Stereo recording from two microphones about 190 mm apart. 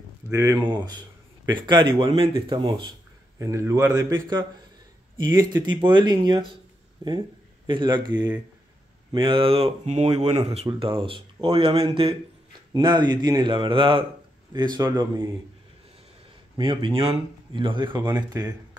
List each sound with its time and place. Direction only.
0.3 s speech: 15° right (ahead or behind)
9.1 s speech: 25° right (ahead or behind)
16.5 s speech: 25° right (ahead or behind)
18.0 s speech: 10° right (ahead or behind)